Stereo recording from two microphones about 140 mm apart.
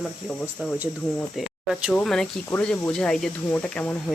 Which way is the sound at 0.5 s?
5° right (ahead or behind).